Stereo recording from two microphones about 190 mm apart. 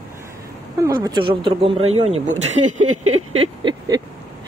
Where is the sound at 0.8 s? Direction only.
20° right (ahead or behind); by 2.7 s 35° right (ahead or behind).